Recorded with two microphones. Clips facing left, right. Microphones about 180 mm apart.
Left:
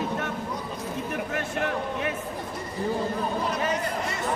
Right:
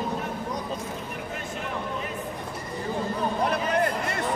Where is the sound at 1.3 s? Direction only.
70° left (ahead or behind).